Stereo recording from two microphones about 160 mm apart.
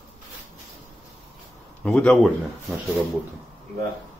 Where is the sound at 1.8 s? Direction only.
5° left (ahead or behind).